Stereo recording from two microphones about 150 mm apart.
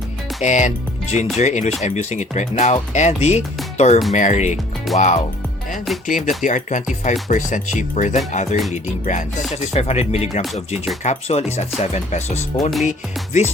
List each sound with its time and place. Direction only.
0.4 s speech: 55° left (ahead or behind)
5.7 s speech: centre (ahead or behind)
6.1 s speech: 60° left (ahead or behind)